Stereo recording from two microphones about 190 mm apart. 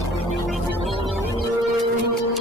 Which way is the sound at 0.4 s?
Centre (ahead or behind).